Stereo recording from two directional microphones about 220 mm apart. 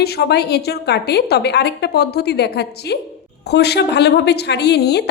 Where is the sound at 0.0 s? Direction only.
50° left (ahead or behind).